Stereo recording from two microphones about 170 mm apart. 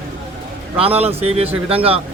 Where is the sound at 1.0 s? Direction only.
35° right (ahead or behind).